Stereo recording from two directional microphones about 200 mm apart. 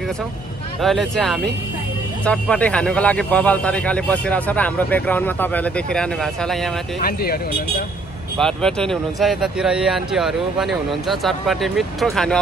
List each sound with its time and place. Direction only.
0.8 s a man's voice: centre (ahead or behind)
7.0 s speech: 50° left (ahead or behind)
8.4 s speech: 5° left (ahead or behind)